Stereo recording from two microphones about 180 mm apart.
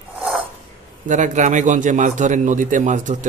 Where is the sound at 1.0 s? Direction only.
45° right (ahead or behind).